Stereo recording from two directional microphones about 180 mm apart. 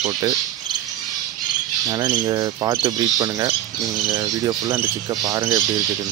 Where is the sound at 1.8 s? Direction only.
20° right (ahead or behind).